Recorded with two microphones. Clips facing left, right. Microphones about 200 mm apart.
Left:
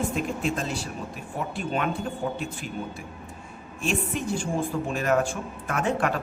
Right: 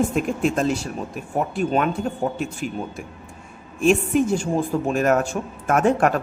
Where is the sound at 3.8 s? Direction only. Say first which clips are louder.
Right 10 dB; 45° right (ahead or behind).